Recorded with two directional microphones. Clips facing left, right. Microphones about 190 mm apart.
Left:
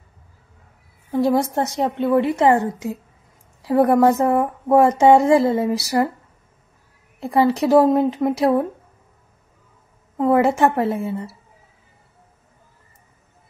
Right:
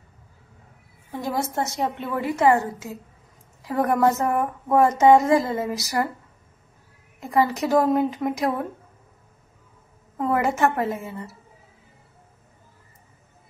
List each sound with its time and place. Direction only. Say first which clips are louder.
1.1 s speech: left 8 dB; 30° left (ahead or behind)
2.6 s a woman's voice: left 7 dB; 15° left (ahead or behind)
3.6 s speech: left 6 dB; 30° left (ahead or behind)
7.2 s speech: left 4 dB; 30° left (ahead or behind)
10.1 s speech: left 6 dB; 30° left (ahead or behind)